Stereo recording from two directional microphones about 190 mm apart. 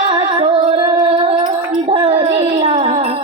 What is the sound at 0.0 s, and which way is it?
Music, 25° right (ahead or behind).